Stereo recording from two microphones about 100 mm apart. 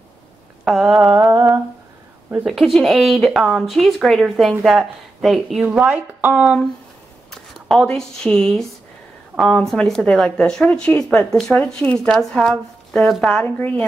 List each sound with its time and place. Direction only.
0.7 s speech: centre (ahead or behind)
2.4 s a woman's voice: centre (ahead or behind)
7.2 s speech: 5° left (ahead or behind)
13.6 s speech: 15° left (ahead or behind)